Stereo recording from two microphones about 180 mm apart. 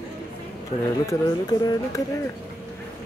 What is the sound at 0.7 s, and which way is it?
Speech, 35° left (ahead or behind).